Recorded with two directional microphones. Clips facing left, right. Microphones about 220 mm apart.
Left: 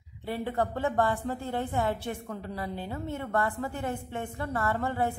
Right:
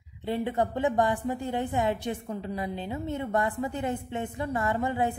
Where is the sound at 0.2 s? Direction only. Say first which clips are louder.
Right 3 dB; 20° right (ahead or behind).